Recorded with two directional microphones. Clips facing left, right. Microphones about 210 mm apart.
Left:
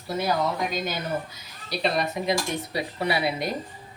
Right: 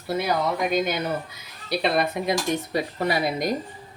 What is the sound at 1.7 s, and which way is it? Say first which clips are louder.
Speech: right 3 dB; 55° right (ahead or behind).